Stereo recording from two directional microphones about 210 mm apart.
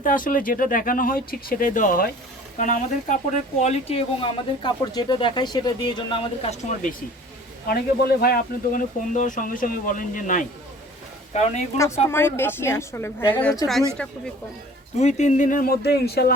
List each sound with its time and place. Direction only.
0.0 s speech: 40° left (ahead or behind)
7.7 s speech: 45° left (ahead or behind); by 11.5 s 30° left (ahead or behind)
12.0 s a woman's voice: 10° left (ahead or behind)
14.9 s speech: 35° left (ahead or behind); by 16.3 s 50° left (ahead or behind)